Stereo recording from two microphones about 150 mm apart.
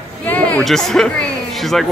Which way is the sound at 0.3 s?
10° left (ahead or behind).